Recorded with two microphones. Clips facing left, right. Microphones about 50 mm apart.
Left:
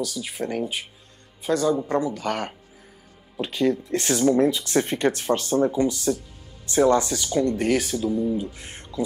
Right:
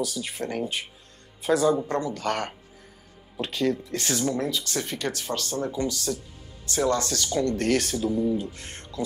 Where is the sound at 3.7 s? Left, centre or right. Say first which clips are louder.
Left 4 dB; left.